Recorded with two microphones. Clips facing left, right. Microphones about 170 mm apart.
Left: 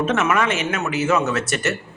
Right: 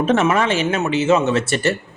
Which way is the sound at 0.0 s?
30° right (ahead or behind).